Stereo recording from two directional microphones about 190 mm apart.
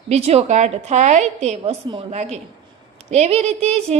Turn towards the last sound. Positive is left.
turn(degrees=-35)  # may be behind; listen again after turning